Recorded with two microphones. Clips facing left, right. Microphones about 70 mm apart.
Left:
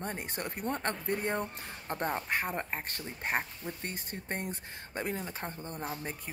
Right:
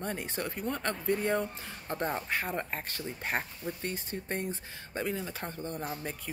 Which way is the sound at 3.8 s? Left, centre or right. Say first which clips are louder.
Right 4 dB; left.